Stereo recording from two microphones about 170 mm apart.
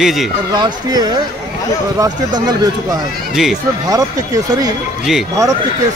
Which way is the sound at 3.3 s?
5° right (ahead or behind).